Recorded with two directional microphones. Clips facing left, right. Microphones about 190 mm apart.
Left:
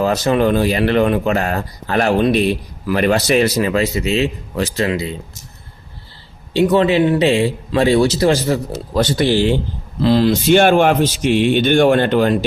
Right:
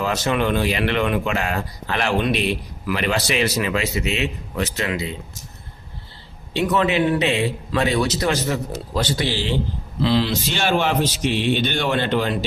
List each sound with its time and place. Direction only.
0.0 s speech: 35° left (ahead or behind)
6.5 s speech: 30° left (ahead or behind)
9.0 s a man's voice: 50° left (ahead or behind)